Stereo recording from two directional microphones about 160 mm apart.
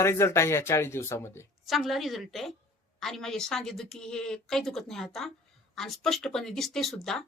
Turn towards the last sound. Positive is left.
turn(degrees=5)  # may be behind; listen again after turning